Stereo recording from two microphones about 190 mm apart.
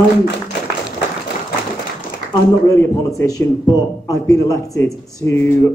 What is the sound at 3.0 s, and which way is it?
A man's voice, 15° left (ahead or behind).